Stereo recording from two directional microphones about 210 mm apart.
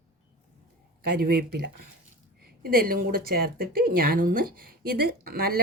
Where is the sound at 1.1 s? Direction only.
45° right (ahead or behind).